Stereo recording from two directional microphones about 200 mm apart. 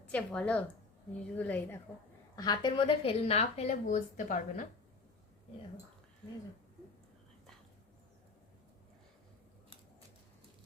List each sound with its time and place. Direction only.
0.1 s a woman's voice: 5° left (ahead or behind)
2.3 s speech: 20° left (ahead or behind); by 4.7 s 40° left (ahead or behind)